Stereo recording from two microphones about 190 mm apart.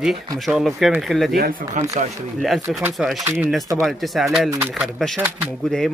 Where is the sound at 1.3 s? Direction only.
50° right (ahead or behind).